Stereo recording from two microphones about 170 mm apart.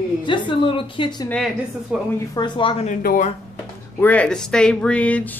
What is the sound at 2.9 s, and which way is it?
Speech, 50° left (ahead or behind).